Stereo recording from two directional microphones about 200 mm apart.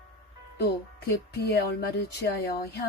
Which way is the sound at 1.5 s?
55° left (ahead or behind).